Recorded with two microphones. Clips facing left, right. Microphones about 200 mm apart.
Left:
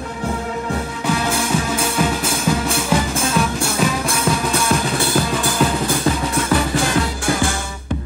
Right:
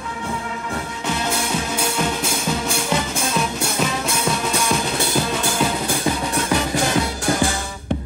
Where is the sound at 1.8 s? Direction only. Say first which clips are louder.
Left 3 dB; 5° left (ahead or behind).